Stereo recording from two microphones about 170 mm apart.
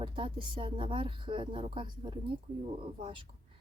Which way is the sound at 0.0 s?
30° right (ahead or behind).